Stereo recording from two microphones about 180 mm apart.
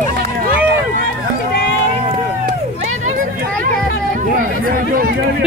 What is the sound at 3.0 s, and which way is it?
Vehicle, 45° right (ahead or behind).